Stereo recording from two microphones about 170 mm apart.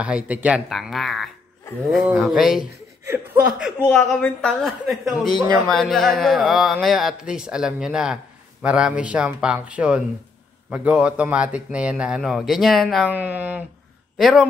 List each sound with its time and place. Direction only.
0.0 s speech: 5° right (ahead or behind)
3.9 s a man's voice: 5° left (ahead or behind)